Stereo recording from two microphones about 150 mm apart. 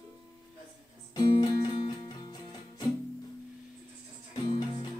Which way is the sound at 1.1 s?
25° left (ahead or behind).